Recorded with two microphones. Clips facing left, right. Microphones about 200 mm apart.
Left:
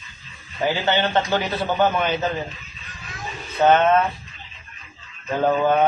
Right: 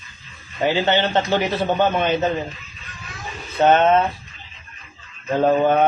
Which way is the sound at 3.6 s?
20° right (ahead or behind).